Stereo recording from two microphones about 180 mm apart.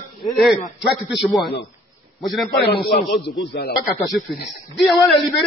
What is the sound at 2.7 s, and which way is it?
Speech, 60° left (ahead or behind).